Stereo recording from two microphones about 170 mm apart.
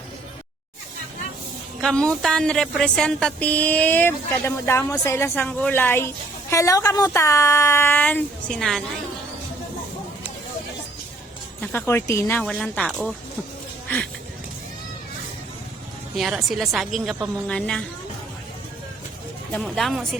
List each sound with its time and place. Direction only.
1.8 s speech: 5° left (ahead or behind)
11.6 s speech: 15° left (ahead or behind)
16.1 s a woman's voice: centre (ahead or behind)
19.5 s a woman's voice: centre (ahead or behind)